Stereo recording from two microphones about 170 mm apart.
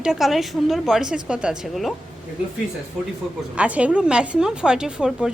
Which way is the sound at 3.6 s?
5° right (ahead or behind).